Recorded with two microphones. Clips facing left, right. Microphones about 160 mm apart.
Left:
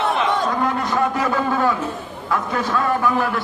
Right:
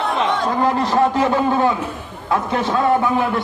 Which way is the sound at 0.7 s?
30° right (ahead or behind).